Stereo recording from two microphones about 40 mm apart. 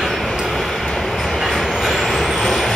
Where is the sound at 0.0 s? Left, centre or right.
Centre.